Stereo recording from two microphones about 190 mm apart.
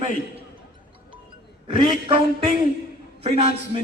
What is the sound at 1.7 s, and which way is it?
A man's voice, 30° right (ahead or behind).